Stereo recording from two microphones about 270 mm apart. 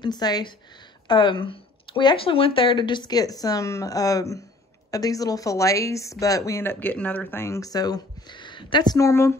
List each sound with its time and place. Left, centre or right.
0.0 s speech: centre